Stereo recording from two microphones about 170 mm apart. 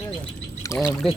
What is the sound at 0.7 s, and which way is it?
Speech, 15° left (ahead or behind).